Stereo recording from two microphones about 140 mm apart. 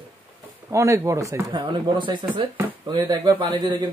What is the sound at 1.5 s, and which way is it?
Speech, 35° right (ahead or behind).